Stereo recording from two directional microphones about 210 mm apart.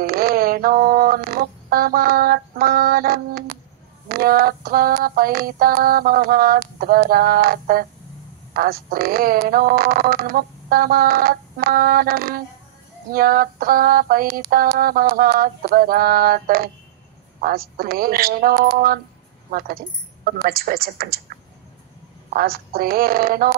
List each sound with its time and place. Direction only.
0.0 s a sound: 45° right (ahead or behind)
4.1 s speech: 45° right (ahead or behind)
20.2 s speech: 45° right (ahead or behind)
22.3 s speech: 45° right (ahead or behind)